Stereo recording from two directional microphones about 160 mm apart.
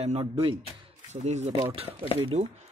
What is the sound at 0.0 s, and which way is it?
Speech, 35° right (ahead or behind).